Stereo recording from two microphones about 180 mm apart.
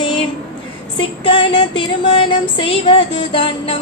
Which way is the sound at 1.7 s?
25° left (ahead or behind).